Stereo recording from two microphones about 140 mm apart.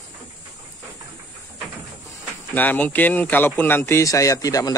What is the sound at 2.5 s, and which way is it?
Speech, 10° left (ahead or behind).